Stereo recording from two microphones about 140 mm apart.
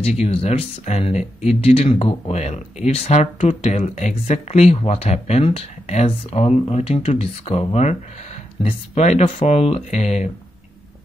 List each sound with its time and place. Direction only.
0.0 s speech: 45° left (ahead or behind)